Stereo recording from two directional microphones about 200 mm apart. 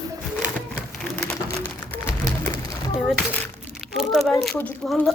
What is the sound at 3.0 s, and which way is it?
Crumpling, centre (ahead or behind).